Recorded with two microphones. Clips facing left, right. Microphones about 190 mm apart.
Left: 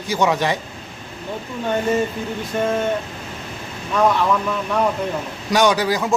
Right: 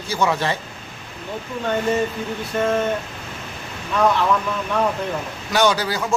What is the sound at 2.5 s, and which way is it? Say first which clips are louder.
Speech: even; 15° left (ahead or behind).